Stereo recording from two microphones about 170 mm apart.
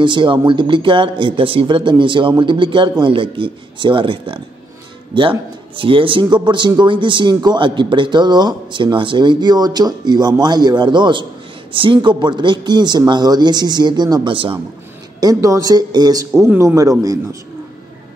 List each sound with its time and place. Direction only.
0.0 s speech: 30° right (ahead or behind)
5.8 s speech: 30° right (ahead or behind)
15.1 s speech: 20° right (ahead or behind)